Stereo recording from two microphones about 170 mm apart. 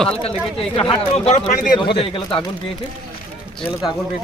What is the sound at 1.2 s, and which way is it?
Speech, 45° left (ahead or behind).